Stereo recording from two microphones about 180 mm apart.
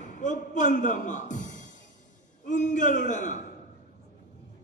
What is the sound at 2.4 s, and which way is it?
A man's voice, 45° left (ahead or behind).